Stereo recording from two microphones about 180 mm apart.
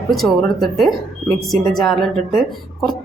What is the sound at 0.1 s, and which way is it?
Speech, centre (ahead or behind).